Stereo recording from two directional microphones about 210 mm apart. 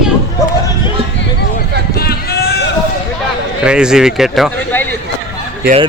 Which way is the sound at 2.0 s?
50° left (ahead or behind).